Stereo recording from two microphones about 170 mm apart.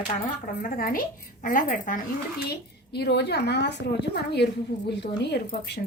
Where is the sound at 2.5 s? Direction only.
75° left (ahead or behind).